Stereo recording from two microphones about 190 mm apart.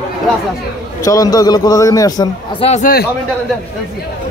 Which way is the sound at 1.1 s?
20° left (ahead or behind).